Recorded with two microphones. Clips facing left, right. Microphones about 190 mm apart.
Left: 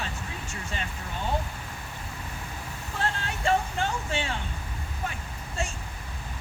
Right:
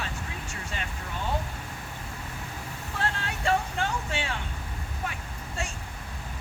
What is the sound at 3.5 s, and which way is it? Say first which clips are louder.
Vehicle: left 1 dB; 25° left (ahead or behind).